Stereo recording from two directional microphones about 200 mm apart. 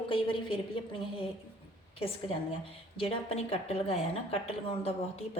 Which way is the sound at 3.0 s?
30° left (ahead or behind).